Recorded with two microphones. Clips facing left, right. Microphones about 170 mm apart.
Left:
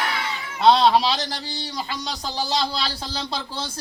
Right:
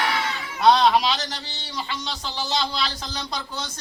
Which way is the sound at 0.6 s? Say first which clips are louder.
Left 1 dB; 30° left (ahead or behind).